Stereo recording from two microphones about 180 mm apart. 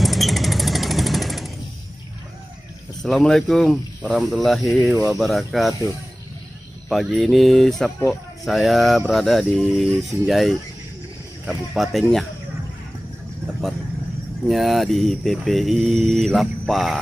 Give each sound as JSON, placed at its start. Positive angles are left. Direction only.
{"t": 0.0, "sound": "vehicle", "side_deg": 0}
{"t": 3.0, "sound": "speech", "side_deg": 0}
{"t": 4.9, "sound": "speech", "side_deg": -15}
{"t": 5.2, "sound": "speech", "side_deg": 0}
{"t": 6.9, "sound": "speech", "side_deg": 0}
{"t": 14.5, "sound": "speech", "side_deg": 0}